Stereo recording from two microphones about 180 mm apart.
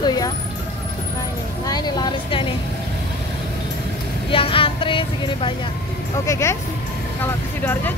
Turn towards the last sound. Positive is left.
turn(degrees=10)  # may be behind; listen again after turning